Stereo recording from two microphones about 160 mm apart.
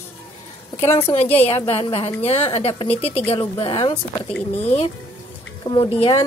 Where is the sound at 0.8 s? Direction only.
15° left (ahead or behind).